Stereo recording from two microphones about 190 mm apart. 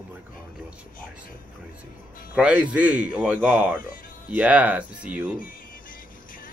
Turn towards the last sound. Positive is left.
turn(degrees=45)  # may be behind; listen again after turning